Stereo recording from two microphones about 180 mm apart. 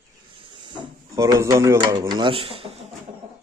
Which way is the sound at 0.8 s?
15° right (ahead or behind).